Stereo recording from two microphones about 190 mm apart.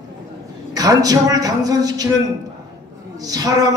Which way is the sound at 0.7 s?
20° right (ahead or behind).